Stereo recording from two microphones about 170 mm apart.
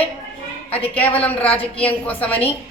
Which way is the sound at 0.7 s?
35° left (ahead or behind).